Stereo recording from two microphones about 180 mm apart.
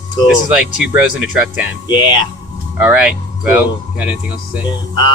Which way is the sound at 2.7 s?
5° right (ahead or behind).